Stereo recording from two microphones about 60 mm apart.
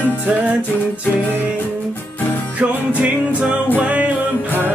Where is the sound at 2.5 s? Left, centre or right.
Right.